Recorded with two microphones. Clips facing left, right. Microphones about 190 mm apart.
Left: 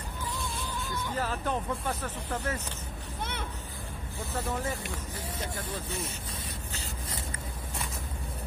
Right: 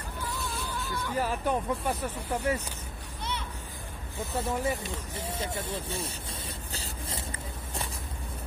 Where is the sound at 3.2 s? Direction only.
55° left (ahead or behind).